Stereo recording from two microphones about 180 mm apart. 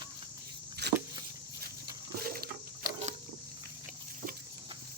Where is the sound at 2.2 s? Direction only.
55° right (ahead or behind).